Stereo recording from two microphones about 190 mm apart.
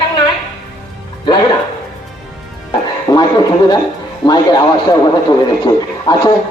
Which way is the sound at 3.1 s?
20° left (ahead or behind).